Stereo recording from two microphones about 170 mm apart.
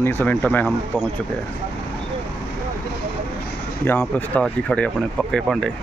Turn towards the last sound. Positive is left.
turn(degrees=5)  # may be behind; listen again after turning